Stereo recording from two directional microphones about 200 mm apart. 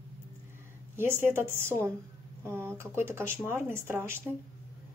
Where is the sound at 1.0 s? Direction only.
10° right (ahead or behind).